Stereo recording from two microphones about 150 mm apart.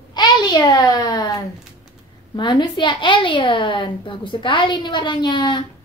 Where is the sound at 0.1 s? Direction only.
30° left (ahead or behind).